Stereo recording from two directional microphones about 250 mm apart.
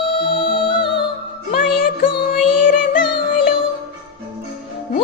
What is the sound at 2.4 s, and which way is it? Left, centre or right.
Music, centre.